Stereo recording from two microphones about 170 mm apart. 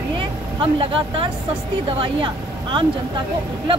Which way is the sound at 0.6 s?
30° right (ahead or behind).